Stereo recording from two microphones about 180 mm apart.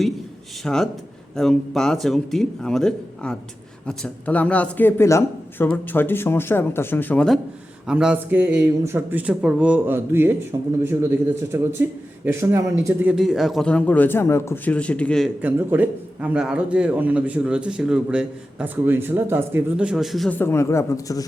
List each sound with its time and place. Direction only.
0.6 s a man's voice: 5° left (ahead or behind)
7.9 s a man's voice: 5° right (ahead or behind)
15.4 s a man's voice: 10° right (ahead or behind); by 21.2 s 20° left (ahead or behind)